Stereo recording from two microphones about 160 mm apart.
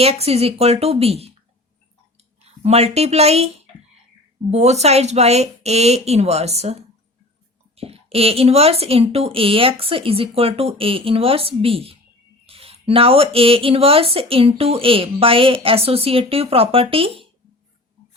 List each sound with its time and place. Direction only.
0.0 s speech: 40° right (ahead or behind)